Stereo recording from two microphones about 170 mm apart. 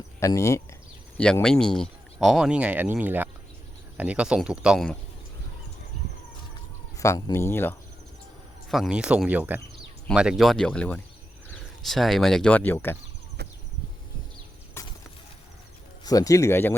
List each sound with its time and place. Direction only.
0.2 s speech: 15° left (ahead or behind)
1.2 s speech: 5° left (ahead or behind)
6.9 s speech: 20° left (ahead or behind)
8.7 s speech: 5° right (ahead or behind); by 13.0 s 10° left (ahead or behind)
14.8 s a sound: 15° left (ahead or behind)
16.0 s speech: 20° left (ahead or behind)